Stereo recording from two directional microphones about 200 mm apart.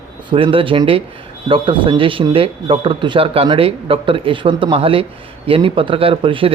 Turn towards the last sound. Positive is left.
turn(degrees=-25)  # may be behind; listen again after turning